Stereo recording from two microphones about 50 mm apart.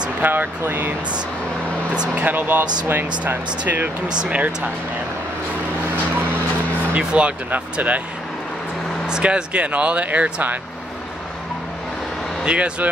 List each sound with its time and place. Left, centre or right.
0.2 s speech: right
2.2 s speech: right
4.2 s speech: right
7.0 s speech: right
9.0 s speech: centre; by 10.6 s right
12.4 s speech: right